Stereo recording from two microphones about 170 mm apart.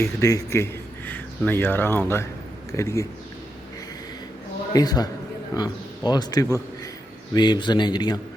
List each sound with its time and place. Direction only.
0.0 s speech: 20° left (ahead or behind)
4.7 s a man's voice: 25° left (ahead or behind)